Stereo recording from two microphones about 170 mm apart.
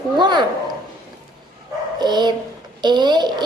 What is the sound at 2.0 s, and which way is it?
A child's voice, 25° right (ahead or behind).